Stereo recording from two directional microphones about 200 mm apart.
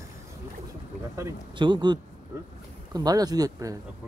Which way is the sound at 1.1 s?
20° right (ahead or behind).